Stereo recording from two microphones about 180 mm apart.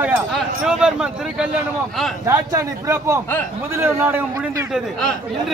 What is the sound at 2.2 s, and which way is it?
A man's voice, 20° right (ahead or behind).